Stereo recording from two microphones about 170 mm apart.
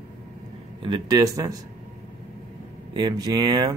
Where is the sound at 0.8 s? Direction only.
25° right (ahead or behind).